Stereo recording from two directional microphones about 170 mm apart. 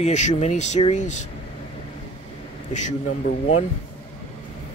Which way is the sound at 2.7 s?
45° left (ahead or behind).